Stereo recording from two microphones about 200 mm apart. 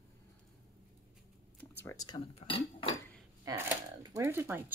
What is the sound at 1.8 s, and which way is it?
Speech, 20° left (ahead or behind).